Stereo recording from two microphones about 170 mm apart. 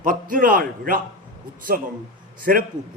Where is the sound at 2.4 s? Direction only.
55° right (ahead or behind).